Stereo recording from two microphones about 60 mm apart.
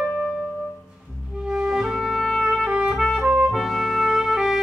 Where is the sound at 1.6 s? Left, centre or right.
Centre.